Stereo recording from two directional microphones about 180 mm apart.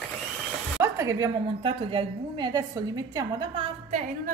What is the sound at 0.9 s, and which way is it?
Speech, 15° right (ahead or behind).